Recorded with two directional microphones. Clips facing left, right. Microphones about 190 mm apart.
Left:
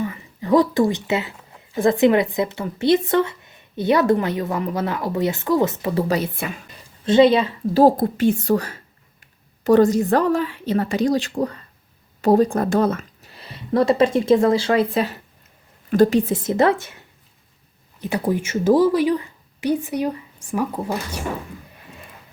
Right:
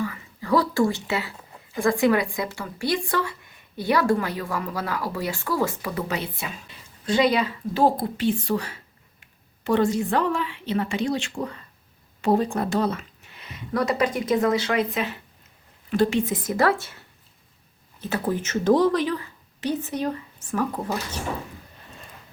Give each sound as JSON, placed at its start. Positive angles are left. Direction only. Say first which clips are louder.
{"t": 0.0, "sound": "speech", "louder": "left 3 dB", "side_deg": 20}
{"t": 6.3, "sound": "a woman's voice", "louder": "left 6 dB", "side_deg": 55}
{"t": 7.0, "sound": "a woman's voice", "louder": "left 7 dB", "side_deg": 25}
{"t": 18.0, "sound": "a woman's voice", "louder": "left 4 dB", "side_deg": 15}